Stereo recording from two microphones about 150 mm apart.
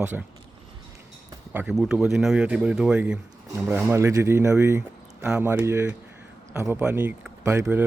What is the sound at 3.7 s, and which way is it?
A man's voice, 15° right (ahead or behind).